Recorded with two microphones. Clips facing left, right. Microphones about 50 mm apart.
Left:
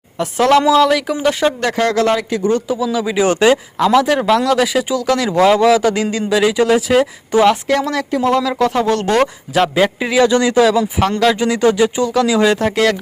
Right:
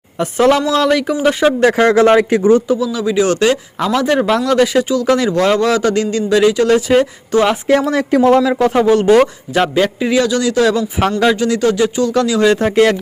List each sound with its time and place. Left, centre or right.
0.2 s speech: centre
1.6 s speech: right
2.6 s speech: centre
3.8 s speech: centre
5.3 s speech: centre
7.7 s speech: centre
8.1 s speech: right
8.4 s speech: centre
8.9 s speech: centre
10.2 s speech: left
10.6 s speech: centre
12.5 s speech: centre